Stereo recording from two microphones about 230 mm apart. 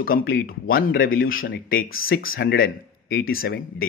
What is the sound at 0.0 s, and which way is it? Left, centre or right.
Speech, left.